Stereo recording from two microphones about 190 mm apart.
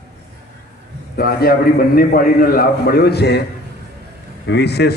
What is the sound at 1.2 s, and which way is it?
A man's voice, 55° left (ahead or behind).